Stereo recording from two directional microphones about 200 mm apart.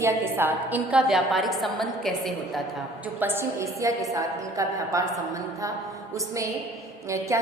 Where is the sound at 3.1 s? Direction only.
10° right (ahead or behind).